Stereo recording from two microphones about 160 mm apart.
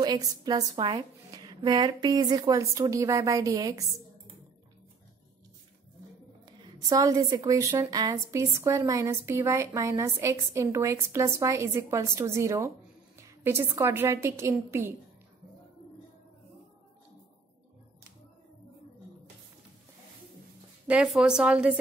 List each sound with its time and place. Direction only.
0.0 s a woman's voice: 25° right (ahead or behind)
6.6 s a woman's voice: 20° right (ahead or behind)
20.8 s a woman's voice: 5° right (ahead or behind)